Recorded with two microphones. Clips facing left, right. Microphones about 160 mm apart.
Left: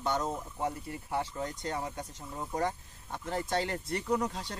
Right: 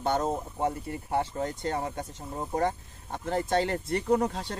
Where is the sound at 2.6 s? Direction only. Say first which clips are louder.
Right 4 dB; 50° right (ahead or behind).